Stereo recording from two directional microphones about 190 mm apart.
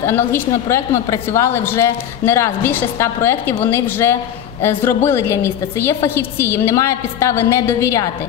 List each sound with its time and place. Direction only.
0.0 s a woman's voice: 15° left (ahead or behind)